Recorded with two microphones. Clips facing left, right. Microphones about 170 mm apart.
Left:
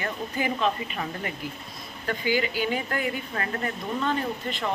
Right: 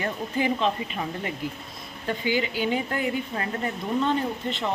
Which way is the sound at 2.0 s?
25° right (ahead or behind).